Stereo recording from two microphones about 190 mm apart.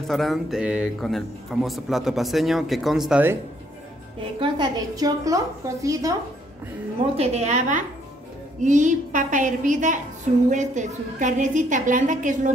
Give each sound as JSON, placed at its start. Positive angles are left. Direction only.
{"t": 0.1, "sound": "a man's voice", "side_deg": 0}
{"t": 4.4, "sound": "a woman's voice", "side_deg": -20}
{"t": 7.2, "sound": "a woman's voice", "side_deg": -35}